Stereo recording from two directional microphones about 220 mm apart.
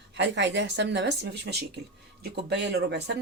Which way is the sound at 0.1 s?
55° right (ahead or behind).